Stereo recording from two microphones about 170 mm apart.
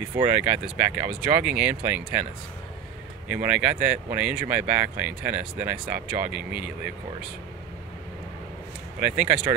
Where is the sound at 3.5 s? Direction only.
10° right (ahead or behind).